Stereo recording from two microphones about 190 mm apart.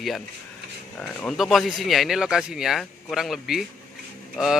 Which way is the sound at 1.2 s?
Centre (ahead or behind).